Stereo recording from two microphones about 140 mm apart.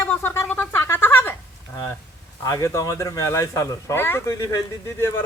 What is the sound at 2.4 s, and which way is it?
Speech, 20° left (ahead or behind).